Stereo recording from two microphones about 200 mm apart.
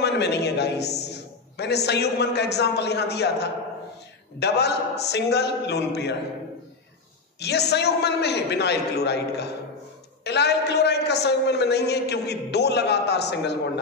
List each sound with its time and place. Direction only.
0.0 s a man's voice: 55° left (ahead or behind)
7.3 s a man's voice: 55° left (ahead or behind)